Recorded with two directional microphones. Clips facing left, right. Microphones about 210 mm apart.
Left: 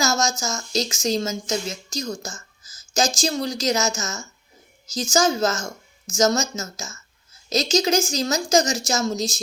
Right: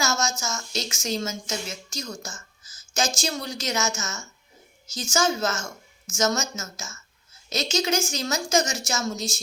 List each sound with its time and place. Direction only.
0.0 s speech: 35° left (ahead or behind)